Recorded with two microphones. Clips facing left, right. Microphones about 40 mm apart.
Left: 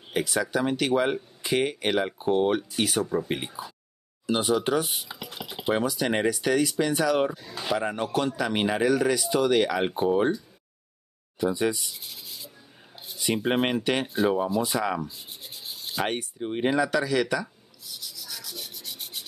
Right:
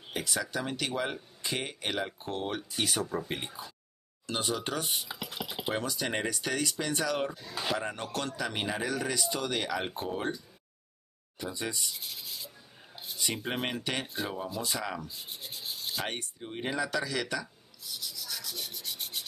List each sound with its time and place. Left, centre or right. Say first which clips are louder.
0.1 s speech: left 7 dB; centre
7.8 s speech: left 8 dB; centre
8.5 s speech: left 9 dB; left
8.8 s speech: left 9 dB; centre
11.3 s speech: left 11 dB; centre
11.8 s a sound: even; centre
14.0 s speech: left 11 dB; centre
15.0 s rub: left 1 dB; centre
16.3 s speech: left 10 dB; left
16.7 s rub: left 6 dB; centre